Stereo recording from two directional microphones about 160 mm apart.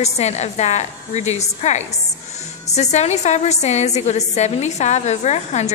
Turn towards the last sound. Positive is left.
turn(degrees=45)  # may be behind; listen again after turning